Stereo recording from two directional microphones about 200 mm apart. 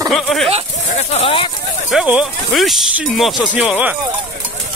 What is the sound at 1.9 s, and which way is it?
Speech, 5° right (ahead or behind).